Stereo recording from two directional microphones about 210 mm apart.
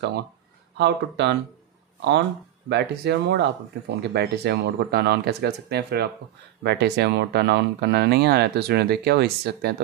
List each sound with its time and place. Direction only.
0.7 s speech: 55° right (ahead or behind)